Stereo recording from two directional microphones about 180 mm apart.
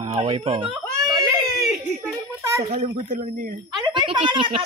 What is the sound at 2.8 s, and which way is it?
Speech, 50° right (ahead or behind).